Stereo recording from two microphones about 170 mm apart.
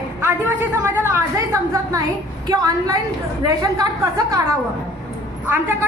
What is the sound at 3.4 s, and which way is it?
A woman's voice, 20° right (ahead or behind).